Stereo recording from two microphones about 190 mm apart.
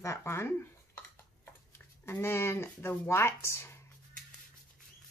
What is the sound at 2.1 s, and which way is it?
Speech, 15° left (ahead or behind).